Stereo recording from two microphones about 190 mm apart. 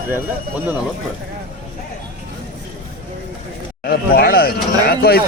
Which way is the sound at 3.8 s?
55° left (ahead or behind).